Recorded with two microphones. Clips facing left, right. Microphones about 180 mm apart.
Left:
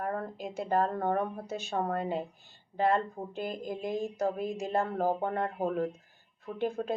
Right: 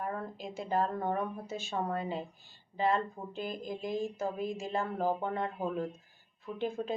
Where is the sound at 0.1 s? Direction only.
60° left (ahead or behind).